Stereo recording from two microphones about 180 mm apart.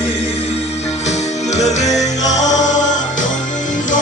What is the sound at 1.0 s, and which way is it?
Music, 40° left (ahead or behind).